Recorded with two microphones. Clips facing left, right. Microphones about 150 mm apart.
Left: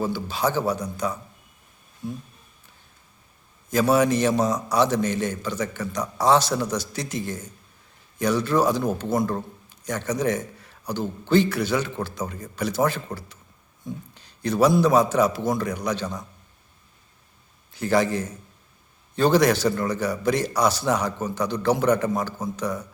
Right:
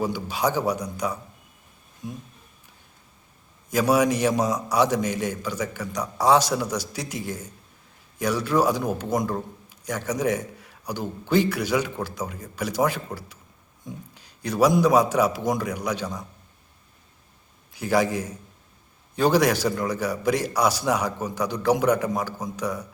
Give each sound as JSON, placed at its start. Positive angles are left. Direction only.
{"t": 0.0, "sound": "a man's voice", "side_deg": -15}
{"t": 3.7, "sound": "a man's voice", "side_deg": -10}
{"t": 17.7, "sound": "a man's voice", "side_deg": -10}